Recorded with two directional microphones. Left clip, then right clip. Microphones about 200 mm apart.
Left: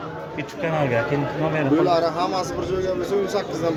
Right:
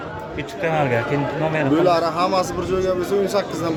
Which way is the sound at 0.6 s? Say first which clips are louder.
Right 3 dB; centre (ahead or behind).